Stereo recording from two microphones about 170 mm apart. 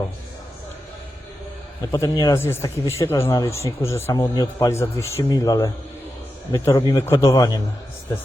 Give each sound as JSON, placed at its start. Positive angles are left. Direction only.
{"t": 1.8, "sound": "a man's voice", "side_deg": 20}